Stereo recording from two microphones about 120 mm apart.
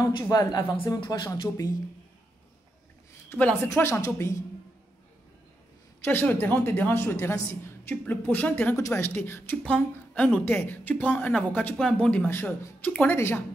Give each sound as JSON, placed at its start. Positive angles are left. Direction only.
{"t": 0.3, "sound": "speech", "side_deg": 35}
{"t": 3.3, "sound": "speech", "side_deg": 10}
{"t": 3.6, "sound": "speech", "side_deg": 25}
{"t": 5.9, "sound": "a woman's voice", "side_deg": 20}
{"t": 12.3, "sound": "speech", "side_deg": 20}